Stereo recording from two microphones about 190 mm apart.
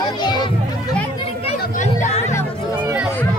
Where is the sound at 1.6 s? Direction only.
40° left (ahead or behind).